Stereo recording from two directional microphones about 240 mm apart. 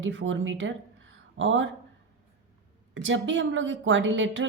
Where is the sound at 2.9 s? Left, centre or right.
Right.